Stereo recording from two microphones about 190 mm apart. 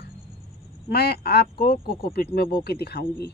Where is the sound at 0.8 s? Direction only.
60° left (ahead or behind).